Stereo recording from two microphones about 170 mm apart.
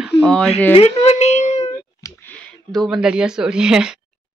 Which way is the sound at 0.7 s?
40° left (ahead or behind).